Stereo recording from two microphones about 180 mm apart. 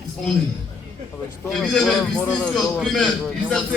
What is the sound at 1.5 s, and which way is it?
A man's voice, centre (ahead or behind).